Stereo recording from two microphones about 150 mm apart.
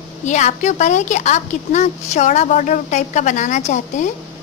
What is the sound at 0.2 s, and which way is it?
A woman's voice, 50° left (ahead or behind).